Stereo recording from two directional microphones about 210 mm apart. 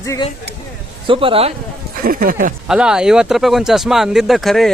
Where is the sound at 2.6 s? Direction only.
5° right (ahead or behind).